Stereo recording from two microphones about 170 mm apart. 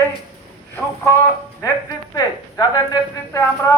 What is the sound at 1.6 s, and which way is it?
A woman's voice, 20° left (ahead or behind).